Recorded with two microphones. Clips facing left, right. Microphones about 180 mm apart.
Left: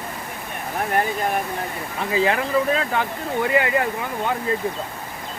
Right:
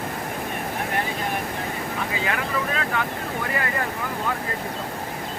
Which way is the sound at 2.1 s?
30° left (ahead or behind).